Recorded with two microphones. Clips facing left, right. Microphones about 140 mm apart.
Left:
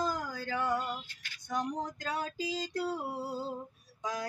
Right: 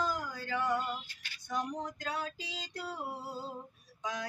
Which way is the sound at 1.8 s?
40° left (ahead or behind).